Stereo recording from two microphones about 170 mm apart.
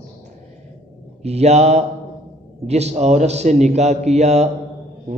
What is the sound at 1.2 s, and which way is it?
A man's voice, 40° right (ahead or behind).